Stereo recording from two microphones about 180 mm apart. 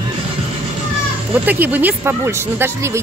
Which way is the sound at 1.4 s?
10° right (ahead or behind).